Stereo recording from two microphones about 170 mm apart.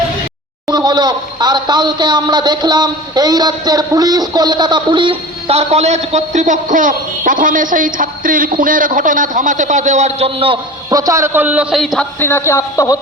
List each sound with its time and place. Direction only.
0.7 s speech: 25° right (ahead or behind); by 12.0 s centre (ahead or behind)
12.2 s speech: 15° left (ahead or behind)